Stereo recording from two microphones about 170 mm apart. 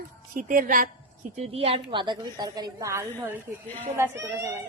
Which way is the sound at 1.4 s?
35° right (ahead or behind).